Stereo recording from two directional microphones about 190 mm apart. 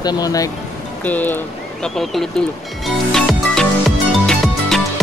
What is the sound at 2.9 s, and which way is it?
Music, centre (ahead or behind).